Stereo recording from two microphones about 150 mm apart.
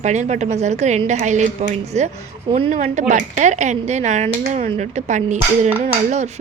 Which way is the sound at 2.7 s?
50° right (ahead or behind).